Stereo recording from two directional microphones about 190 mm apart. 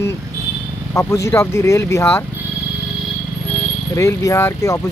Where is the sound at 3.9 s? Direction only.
15° left (ahead or behind).